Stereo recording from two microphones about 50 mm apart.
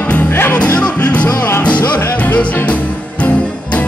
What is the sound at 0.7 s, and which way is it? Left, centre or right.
Music, left.